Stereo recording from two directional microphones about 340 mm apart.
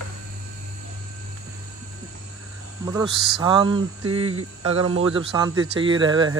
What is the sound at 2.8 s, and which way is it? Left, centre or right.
Speech, centre.